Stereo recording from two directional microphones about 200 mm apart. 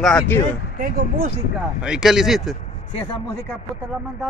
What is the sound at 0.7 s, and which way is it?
Speech, 45° right (ahead or behind).